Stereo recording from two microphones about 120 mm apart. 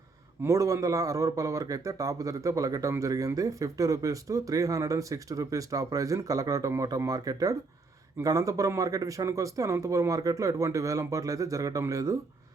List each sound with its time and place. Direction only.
0.4 s speech: 30° right (ahead or behind)